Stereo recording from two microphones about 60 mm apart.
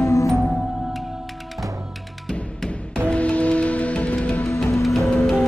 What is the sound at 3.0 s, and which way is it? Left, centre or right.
Music, left.